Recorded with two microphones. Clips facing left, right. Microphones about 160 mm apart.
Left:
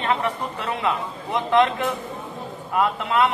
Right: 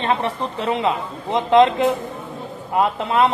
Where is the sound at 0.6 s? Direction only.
20° right (ahead or behind).